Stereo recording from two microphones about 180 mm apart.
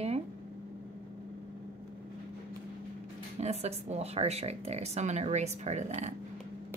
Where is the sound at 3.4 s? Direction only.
35° right (ahead or behind).